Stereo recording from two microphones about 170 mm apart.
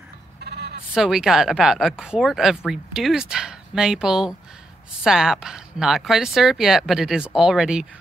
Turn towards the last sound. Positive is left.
turn(degrees=-5)  # may be behind; listen again after turning